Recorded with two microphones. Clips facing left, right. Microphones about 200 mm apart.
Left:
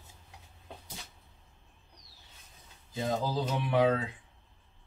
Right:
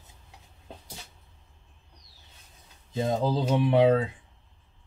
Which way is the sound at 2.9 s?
25° right (ahead or behind).